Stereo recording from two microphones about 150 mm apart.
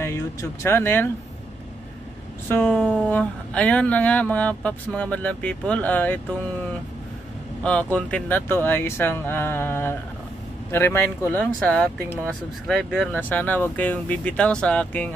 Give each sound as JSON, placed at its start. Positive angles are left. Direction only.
{"t": 0.0, "sound": "speech", "side_deg": 20}
{"t": 2.4, "sound": "speech", "side_deg": 15}
{"t": 7.6, "sound": "speech", "side_deg": 10}